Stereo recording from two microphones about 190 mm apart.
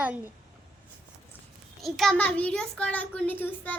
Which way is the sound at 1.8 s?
Centre (ahead or behind).